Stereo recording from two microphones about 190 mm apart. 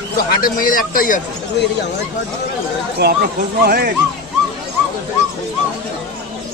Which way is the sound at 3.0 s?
55° right (ahead or behind).